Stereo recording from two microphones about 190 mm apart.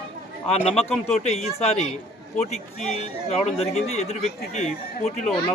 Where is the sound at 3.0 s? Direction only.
35° left (ahead or behind).